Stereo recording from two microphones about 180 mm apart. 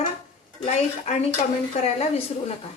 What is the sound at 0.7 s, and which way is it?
Speech, 40° left (ahead or behind).